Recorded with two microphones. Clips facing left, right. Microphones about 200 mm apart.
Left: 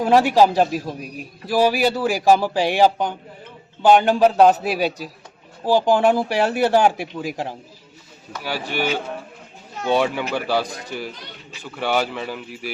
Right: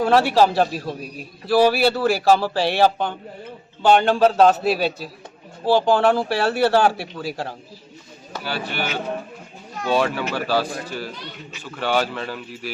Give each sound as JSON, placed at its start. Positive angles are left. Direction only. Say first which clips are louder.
{"t": 0.0, "sound": "a man's voice", "louder": "left 1 dB", "side_deg": 15}